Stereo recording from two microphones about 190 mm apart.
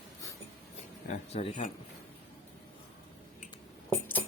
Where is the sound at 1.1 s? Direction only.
35° left (ahead or behind).